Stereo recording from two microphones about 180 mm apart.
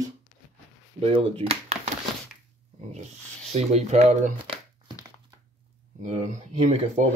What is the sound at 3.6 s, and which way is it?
Speech, 35° right (ahead or behind).